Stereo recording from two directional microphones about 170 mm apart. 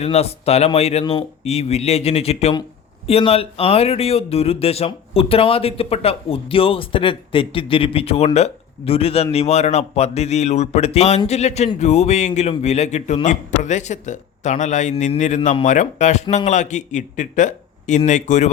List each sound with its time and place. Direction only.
0.0 s speech: 35° left (ahead or behind)